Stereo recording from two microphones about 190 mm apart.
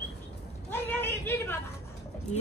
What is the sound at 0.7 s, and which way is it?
Speech, 10° left (ahead or behind).